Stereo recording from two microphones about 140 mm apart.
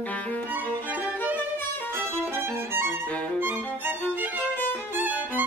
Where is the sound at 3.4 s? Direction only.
15° right (ahead or behind).